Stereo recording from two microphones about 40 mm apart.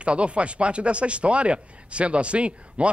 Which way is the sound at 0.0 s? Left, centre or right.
Right.